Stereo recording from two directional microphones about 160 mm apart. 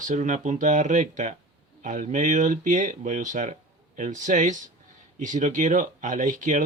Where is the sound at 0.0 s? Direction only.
50° right (ahead or behind).